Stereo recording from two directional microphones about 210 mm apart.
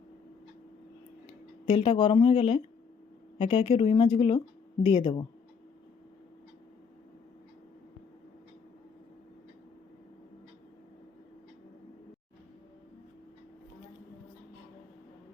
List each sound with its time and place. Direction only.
1.3 s speech: 25° left (ahead or behind)